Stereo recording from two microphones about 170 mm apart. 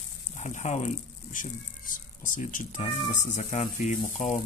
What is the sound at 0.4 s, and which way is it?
Speech, 45° left (ahead or behind).